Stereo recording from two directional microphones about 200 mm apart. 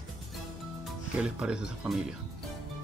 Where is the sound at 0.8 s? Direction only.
5° right (ahead or behind).